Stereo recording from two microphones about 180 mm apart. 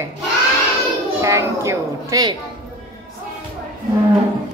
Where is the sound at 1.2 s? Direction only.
15° right (ahead or behind).